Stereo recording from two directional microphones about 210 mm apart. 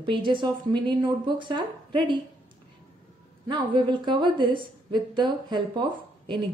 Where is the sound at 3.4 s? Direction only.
20° right (ahead or behind).